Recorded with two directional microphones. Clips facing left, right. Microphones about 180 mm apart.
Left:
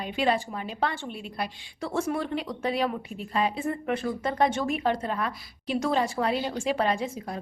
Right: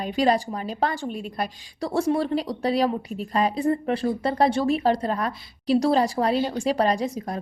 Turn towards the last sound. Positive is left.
turn(degrees=-40)  # may be behind; listen again after turning